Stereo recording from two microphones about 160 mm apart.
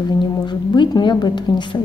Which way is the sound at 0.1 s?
25° left (ahead or behind).